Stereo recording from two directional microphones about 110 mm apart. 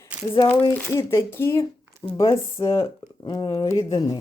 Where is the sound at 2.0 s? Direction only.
40° left (ahead or behind).